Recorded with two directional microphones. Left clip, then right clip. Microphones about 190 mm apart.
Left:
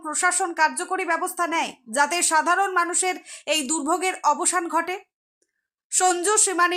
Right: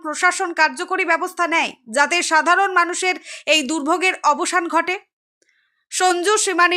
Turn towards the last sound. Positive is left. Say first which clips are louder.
# right 5 dB
turn(degrees=-20)  # may be behind; listen again after turning